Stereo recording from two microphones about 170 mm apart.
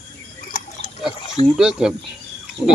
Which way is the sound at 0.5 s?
45° left (ahead or behind).